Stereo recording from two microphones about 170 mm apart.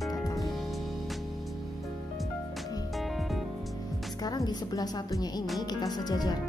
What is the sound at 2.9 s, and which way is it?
Music, centre (ahead or behind).